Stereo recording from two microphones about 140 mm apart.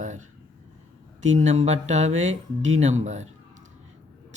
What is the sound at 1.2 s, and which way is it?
Speech, 55° right (ahead or behind).